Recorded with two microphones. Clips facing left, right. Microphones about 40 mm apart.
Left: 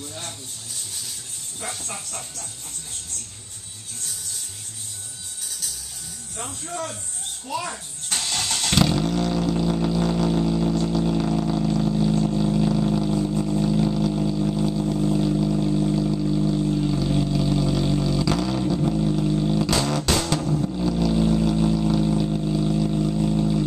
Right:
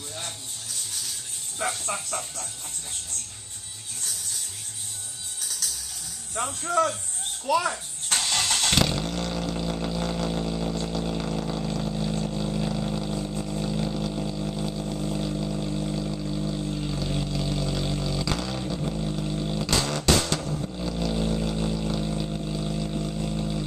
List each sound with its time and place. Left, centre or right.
6.8 s speech: right
7.5 s a child's voice: right
8.2 s vehicle: centre
20.8 s vehicle: centre